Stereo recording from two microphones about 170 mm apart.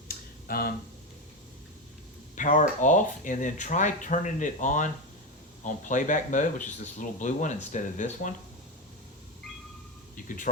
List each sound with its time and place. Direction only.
0.1 s a sound: 60° left (ahead or behind)
2.3 s speech: 50° left (ahead or behind)
10.2 s speech: 50° left (ahead or behind)